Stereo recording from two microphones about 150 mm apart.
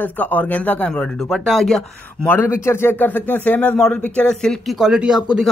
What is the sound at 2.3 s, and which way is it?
Speech, 15° left (ahead or behind).